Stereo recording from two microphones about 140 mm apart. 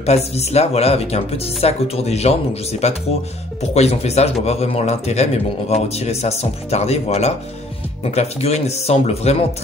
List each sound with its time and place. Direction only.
0.0 s speech: 50° left (ahead or behind)